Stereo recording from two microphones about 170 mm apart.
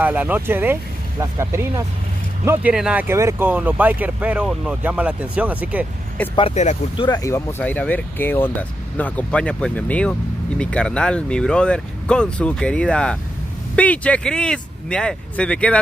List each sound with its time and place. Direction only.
0.0 s speech: 10° right (ahead or behind)
6.3 s speech: 35° left (ahead or behind)
7.1 s speech: 15° left (ahead or behind)